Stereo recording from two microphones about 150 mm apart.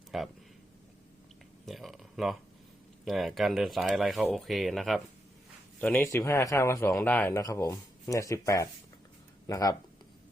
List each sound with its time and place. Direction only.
0.1 s speech: centre (ahead or behind)
1.6 s a sound: centre (ahead or behind)
3.0 s speech: centre (ahead or behind)
5.8 s speech: 10° left (ahead or behind)